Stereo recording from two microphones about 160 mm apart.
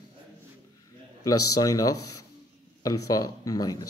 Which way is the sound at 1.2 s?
20° left (ahead or behind).